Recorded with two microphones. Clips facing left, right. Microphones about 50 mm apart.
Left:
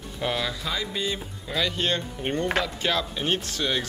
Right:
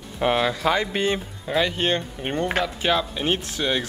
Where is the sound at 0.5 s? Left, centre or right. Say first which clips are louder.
Right 8 dB; right.